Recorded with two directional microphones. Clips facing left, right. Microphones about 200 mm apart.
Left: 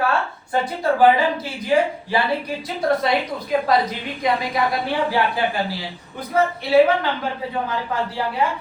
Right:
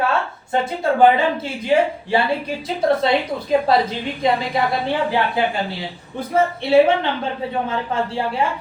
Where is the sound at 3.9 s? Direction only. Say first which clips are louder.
Right 3 dB; 30° right (ahead or behind).